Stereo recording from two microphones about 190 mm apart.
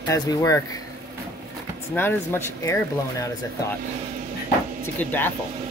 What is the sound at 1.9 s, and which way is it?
Speech, 10° left (ahead or behind).